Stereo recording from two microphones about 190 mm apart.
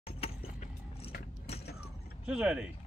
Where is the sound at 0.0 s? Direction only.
30° left (ahead or behind).